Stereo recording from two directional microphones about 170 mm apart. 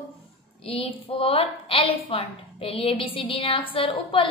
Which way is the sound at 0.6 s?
35° left (ahead or behind).